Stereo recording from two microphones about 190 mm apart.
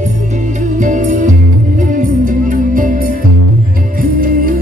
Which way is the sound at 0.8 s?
40° right (ahead or behind).